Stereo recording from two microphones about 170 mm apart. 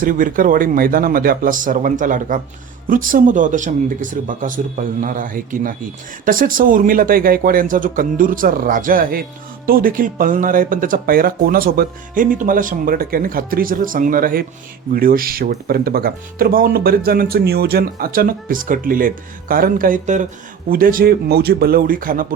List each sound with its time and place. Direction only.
0.0 s speech: 50° right (ahead or behind)